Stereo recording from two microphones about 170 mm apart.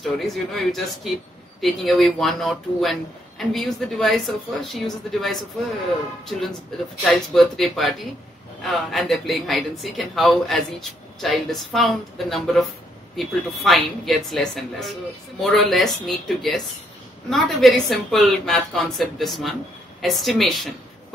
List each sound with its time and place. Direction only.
0.0 s speech: centre (ahead or behind)
7.0 s speech: 5° left (ahead or behind)